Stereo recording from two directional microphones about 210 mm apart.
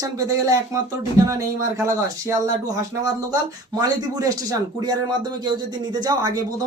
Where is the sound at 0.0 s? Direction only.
15° right (ahead or behind).